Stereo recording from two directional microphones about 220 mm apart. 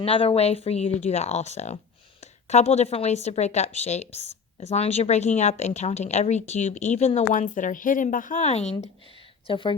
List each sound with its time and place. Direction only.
0.0 s a woman's voice: 25° left (ahead or behind)